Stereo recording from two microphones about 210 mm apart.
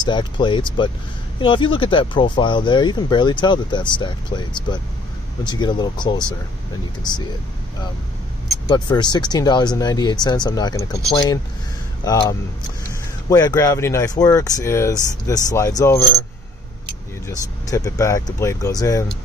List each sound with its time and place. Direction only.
0.0 s speech: 20° left (ahead or behind)
8.6 s speech: 20° left (ahead or behind)
17.6 s speech: 15° left (ahead or behind)